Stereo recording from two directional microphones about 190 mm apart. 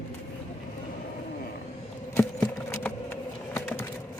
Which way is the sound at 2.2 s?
10° left (ahead or behind).